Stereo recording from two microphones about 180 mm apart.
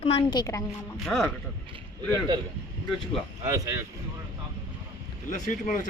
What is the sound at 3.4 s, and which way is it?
Speech, 20° right (ahead or behind).